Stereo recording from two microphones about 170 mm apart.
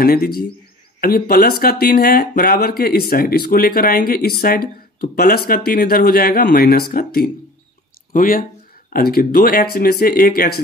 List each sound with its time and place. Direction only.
0.0 s speech: 60° left (ahead or behind)